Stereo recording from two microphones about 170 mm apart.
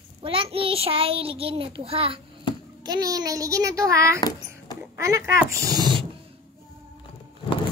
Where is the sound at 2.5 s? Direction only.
30° left (ahead or behind).